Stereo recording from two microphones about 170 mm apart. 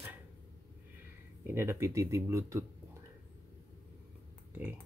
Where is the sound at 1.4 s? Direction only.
15° right (ahead or behind).